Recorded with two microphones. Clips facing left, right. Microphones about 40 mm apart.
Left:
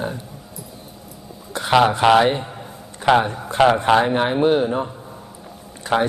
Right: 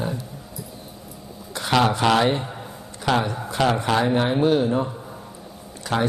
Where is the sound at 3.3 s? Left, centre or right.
Left.